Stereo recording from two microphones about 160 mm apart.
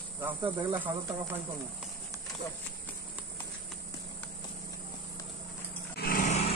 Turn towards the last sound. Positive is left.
turn(degrees=65)  # may be behind; listen again after turning